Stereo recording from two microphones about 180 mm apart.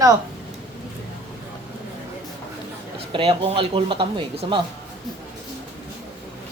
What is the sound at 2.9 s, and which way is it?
Speech, 30° right (ahead or behind).